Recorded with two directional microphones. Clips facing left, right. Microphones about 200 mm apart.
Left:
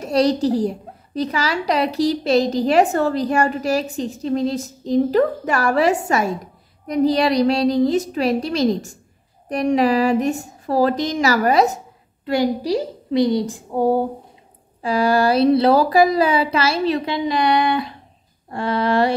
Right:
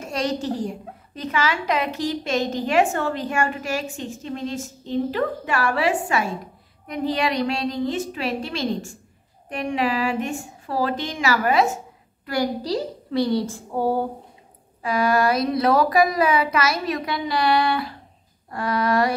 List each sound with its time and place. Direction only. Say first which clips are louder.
0.0 s a woman's voice: left 8 dB; 35° left (ahead or behind)
12.3 s a woman's voice: left 5 dB; 20° left (ahead or behind)
14.8 s speech: left 3 dB; 30° left (ahead or behind)